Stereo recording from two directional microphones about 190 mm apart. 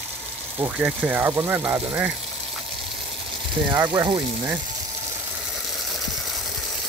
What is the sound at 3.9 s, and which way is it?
Speech, 25° right (ahead or behind).